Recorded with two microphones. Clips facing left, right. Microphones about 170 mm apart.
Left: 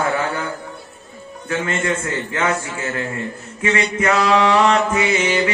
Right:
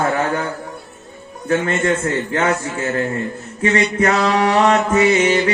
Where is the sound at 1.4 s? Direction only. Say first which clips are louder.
Right 4 dB; 35° right (ahead or behind).